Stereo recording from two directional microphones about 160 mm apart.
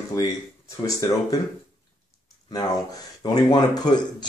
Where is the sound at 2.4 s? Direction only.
25° left (ahead or behind).